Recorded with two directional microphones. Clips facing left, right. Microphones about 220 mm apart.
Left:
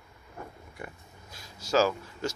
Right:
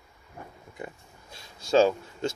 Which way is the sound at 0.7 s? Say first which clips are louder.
Right 3 dB; 25° right (ahead or behind).